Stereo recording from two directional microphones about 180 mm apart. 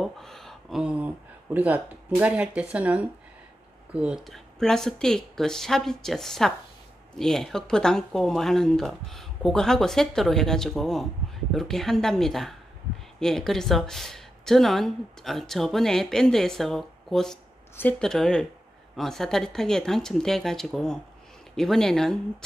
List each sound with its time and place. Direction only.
0.0 s speech: centre (ahead or behind)